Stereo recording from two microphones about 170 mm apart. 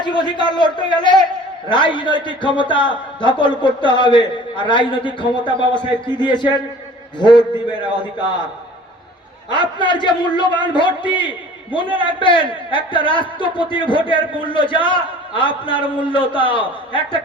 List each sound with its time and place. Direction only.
0.0 s a man's voice: 30° left (ahead or behind)
9.5 s a man's voice: 30° left (ahead or behind)